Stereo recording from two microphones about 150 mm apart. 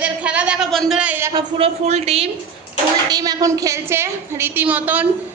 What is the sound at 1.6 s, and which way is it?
Speech, 45° right (ahead or behind).